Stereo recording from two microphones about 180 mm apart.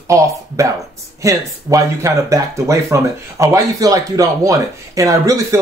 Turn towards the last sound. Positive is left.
turn(degrees=-20)  # may be behind; listen again after turning